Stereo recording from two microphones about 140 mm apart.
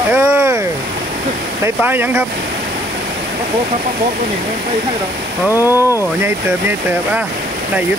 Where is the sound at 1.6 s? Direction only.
15° right (ahead or behind).